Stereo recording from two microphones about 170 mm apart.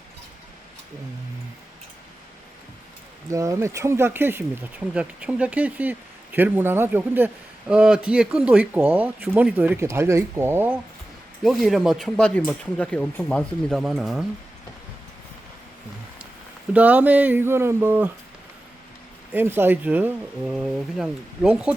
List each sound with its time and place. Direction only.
3.2 s speech: 20° right (ahead or behind)
11.4 s speech: centre (ahead or behind)
16.7 s speech: 10° right (ahead or behind)
19.3 s speech: 10° right (ahead or behind)